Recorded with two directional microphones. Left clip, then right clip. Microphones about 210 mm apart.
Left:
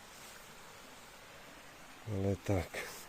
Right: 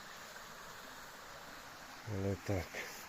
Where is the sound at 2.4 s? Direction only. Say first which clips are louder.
Left 3 dB; 35° left (ahead or behind).